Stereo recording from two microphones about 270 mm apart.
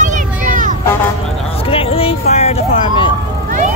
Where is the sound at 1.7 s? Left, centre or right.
Left.